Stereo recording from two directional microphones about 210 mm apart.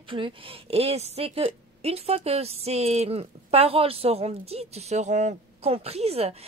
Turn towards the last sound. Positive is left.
turn(degrees=-30)  # may be behind; listen again after turning